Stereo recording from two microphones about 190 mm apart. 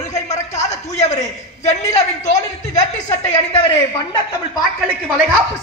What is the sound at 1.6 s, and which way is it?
Speech, 35° left (ahead or behind).